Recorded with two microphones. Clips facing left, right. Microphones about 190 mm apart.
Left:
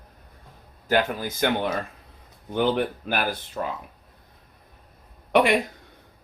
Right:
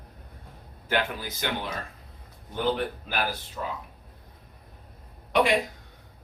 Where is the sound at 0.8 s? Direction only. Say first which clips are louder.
Left 5 dB; 45° left (ahead or behind).